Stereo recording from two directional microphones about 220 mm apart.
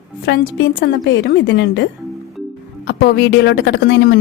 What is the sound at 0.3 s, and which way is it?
A woman's voice, 50° left (ahead or behind).